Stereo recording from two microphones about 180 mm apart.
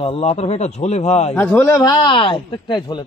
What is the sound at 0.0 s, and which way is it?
Speech, 35° left (ahead or behind).